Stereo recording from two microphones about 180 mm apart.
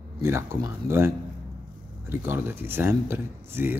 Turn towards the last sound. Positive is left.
turn(degrees=-10)  # may be behind; listen again after turning